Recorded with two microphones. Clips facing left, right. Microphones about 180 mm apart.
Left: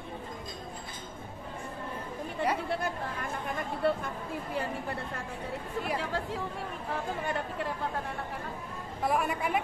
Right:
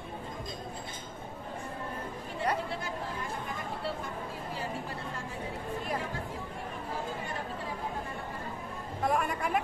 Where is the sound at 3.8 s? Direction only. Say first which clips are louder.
Left 9 dB; 55° left (ahead or behind).